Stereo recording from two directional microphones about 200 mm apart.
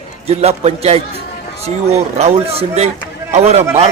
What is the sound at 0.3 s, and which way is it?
A man's voice, 30° right (ahead or behind).